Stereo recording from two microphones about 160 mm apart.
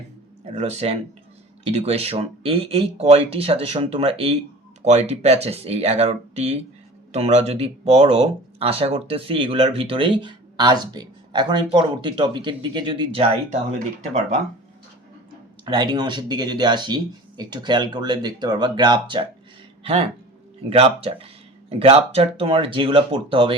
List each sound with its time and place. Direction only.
0.4 s speech: 40° right (ahead or behind)
13.7 s speech: 45° right (ahead or behind)
15.6 s speech: 25° right (ahead or behind)